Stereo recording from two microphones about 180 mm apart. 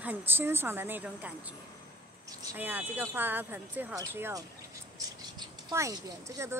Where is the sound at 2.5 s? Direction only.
10° right (ahead or behind).